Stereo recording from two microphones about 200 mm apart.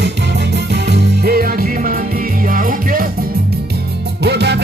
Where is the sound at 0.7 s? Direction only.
55° right (ahead or behind).